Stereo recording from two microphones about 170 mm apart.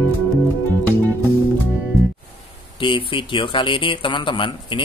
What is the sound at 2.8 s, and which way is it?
Speech, 30° left (ahead or behind).